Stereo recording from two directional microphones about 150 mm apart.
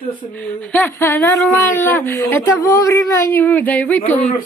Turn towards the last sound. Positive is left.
turn(degrees=10)  # may be behind; listen again after turning